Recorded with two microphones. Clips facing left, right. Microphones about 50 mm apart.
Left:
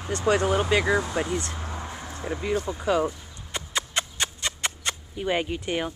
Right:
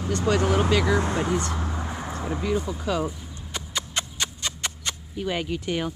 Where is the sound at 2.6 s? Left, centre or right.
Centre.